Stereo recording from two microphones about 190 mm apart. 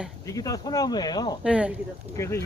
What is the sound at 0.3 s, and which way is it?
Speech, 20° left (ahead or behind).